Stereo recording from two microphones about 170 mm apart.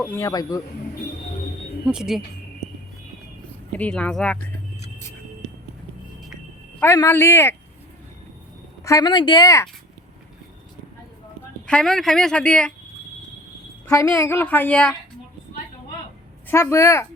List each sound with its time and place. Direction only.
0.0 s a woman's voice: 15° left (ahead or behind)
1.8 s speech: 5° right (ahead or behind)
3.8 s a woman's voice: 10° left (ahead or behind)
6.7 s a woman's voice: 15° left (ahead or behind)
8.8 s speech: 20° left (ahead or behind)
11.6 s speech: 5° left (ahead or behind)
13.8 s a woman's voice: 15° left (ahead or behind)
16.5 s a woman's voice: 15° left (ahead or behind)